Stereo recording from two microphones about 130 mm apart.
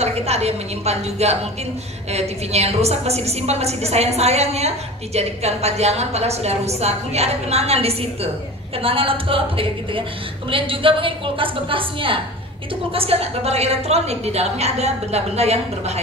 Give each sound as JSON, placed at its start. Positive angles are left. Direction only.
{"t": 0.0, "sound": "a woman's voice", "side_deg": -55}